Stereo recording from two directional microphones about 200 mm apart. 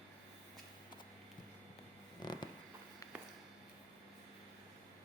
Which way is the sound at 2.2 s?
20° left (ahead or behind).